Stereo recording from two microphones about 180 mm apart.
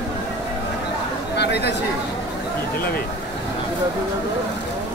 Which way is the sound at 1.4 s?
65° left (ahead or behind).